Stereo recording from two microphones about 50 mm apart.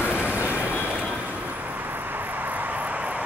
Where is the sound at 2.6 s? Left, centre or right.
Right.